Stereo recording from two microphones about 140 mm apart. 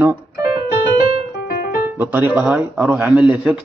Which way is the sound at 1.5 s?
90° left.